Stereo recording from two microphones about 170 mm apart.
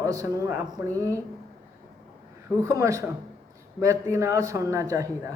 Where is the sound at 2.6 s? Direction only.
20° right (ahead or behind).